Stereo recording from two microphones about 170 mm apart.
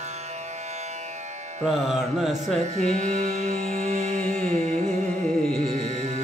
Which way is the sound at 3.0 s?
45° right (ahead or behind).